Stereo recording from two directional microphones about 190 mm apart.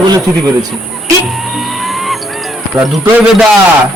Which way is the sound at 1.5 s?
Centre (ahead or behind).